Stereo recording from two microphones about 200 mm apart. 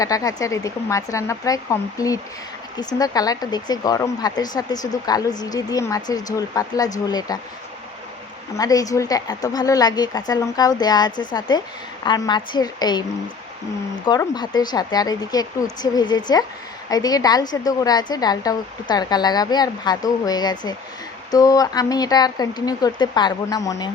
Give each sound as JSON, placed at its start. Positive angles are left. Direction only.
{"t": 0.0, "sound": "speech", "side_deg": 15}
{"t": 8.5, "sound": "speech", "side_deg": 15}